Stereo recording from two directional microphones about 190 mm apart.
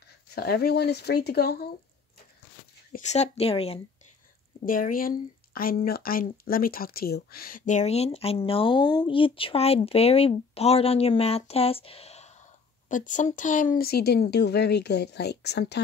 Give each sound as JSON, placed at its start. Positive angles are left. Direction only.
{"t": 0.3, "sound": "speech", "side_deg": 55}
{"t": 2.9, "sound": "speech", "side_deg": 35}
{"t": 4.6, "sound": "speech", "side_deg": 45}